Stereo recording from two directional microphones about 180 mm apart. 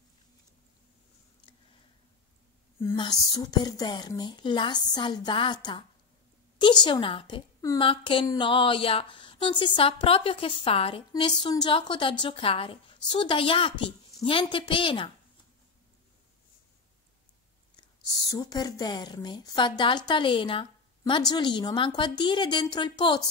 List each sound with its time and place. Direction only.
2.8 s a woman's voice: 20° left (ahead or behind)
17.7 s a woman's voice: 20° left (ahead or behind)